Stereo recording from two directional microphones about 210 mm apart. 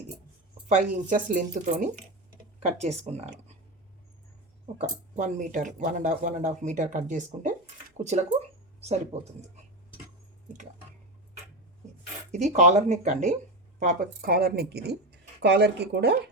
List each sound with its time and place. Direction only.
0.7 s speech: 40° right (ahead or behind)
4.8 s speech: 35° right (ahead or behind)
12.3 s speech: 35° right (ahead or behind); by 16.1 s 50° right (ahead or behind)